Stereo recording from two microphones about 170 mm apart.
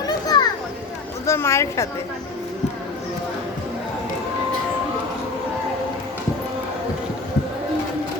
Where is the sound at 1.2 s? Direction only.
15° left (ahead or behind).